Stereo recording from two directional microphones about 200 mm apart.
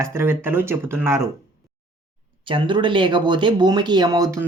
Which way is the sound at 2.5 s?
25° right (ahead or behind).